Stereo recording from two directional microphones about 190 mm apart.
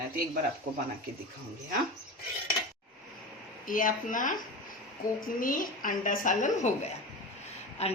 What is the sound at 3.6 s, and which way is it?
A woman's voice, 45° left (ahead or behind).